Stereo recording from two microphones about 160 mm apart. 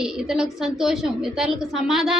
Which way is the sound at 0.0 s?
5° right (ahead or behind).